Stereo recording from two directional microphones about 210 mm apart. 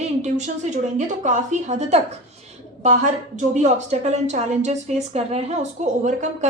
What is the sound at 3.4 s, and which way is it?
A woman's voice, 35° right (ahead or behind).